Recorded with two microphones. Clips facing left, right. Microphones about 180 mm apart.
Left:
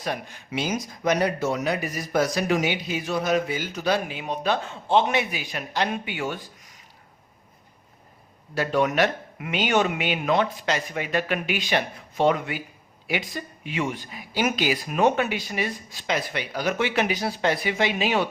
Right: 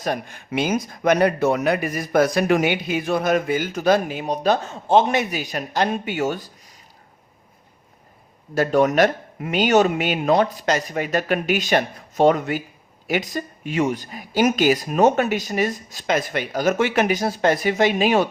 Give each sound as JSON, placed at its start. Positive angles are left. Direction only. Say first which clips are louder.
{"t": 0.0, "sound": "speech", "louder": "right 5 dB", "side_deg": -50}
{"t": 8.5, "sound": "speech", "louder": "right 5 dB", "side_deg": -45}